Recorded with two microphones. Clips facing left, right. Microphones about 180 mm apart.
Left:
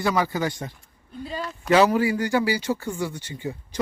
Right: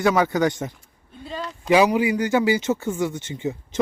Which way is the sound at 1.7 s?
15° right (ahead or behind).